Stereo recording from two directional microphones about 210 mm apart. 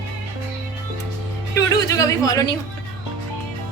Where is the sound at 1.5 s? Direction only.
15° left (ahead or behind).